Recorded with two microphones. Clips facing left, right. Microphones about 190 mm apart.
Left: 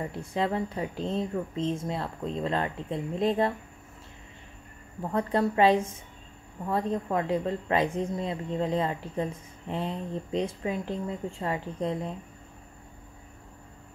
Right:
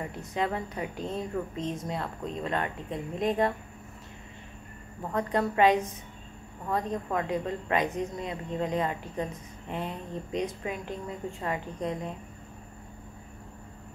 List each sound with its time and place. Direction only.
0.0 s a woman's voice: 30° left (ahead or behind)
5.1 s a woman's voice: 30° left (ahead or behind)